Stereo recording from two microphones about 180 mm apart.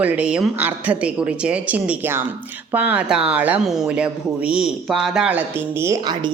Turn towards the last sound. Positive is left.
turn(degrees=-20)  # may be behind; listen again after turning